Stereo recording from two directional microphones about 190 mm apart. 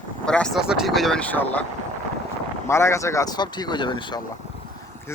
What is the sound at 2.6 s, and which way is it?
Speech, 15° left (ahead or behind).